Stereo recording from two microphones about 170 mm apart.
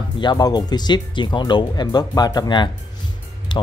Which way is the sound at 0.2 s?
25° left (ahead or behind).